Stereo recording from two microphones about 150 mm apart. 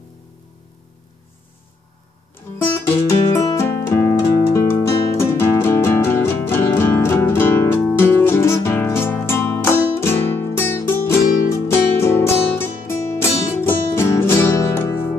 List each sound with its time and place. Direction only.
2.6 s music: 20° left (ahead or behind)